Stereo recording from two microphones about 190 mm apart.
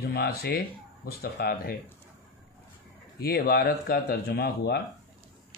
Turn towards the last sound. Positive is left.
turn(degrees=60)  # may be behind; listen again after turning